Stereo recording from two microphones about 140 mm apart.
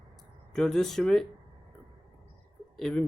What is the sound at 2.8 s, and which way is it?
Speech, 5° left (ahead or behind).